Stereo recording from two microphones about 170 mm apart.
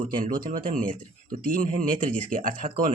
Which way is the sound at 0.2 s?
55° right (ahead or behind).